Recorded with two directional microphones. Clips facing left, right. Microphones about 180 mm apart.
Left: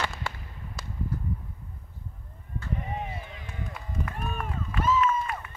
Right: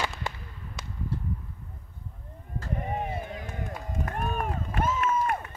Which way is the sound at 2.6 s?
50° right (ahead or behind).